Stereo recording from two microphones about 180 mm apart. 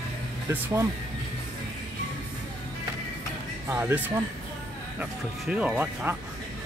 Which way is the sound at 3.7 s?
10° right (ahead or behind).